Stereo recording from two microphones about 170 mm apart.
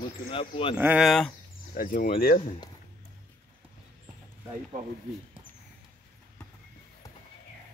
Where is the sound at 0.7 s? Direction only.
10° right (ahead or behind).